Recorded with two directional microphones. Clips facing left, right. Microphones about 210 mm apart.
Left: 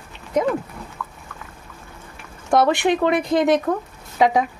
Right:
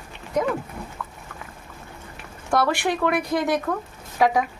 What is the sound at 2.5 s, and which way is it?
Speech, 20° left (ahead or behind).